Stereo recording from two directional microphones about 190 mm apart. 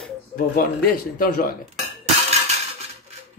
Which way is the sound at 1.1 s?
50° left (ahead or behind).